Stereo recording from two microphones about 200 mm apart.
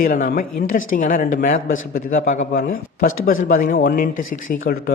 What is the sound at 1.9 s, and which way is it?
Speech, 45° left (ahead or behind).